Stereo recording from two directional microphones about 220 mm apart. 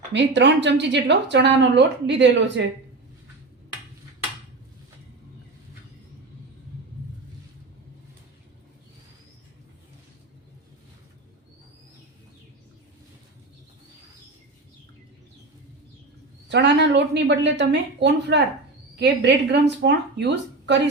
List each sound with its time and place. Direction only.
0.1 s speech: 55° right (ahead or behind)
16.5 s speech: 55° right (ahead or behind)